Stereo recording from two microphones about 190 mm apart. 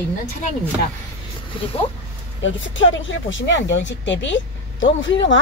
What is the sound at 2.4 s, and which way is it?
Speech, 85° left.